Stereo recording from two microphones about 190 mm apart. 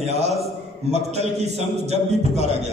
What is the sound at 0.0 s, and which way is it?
A man's voice, 35° right (ahead or behind).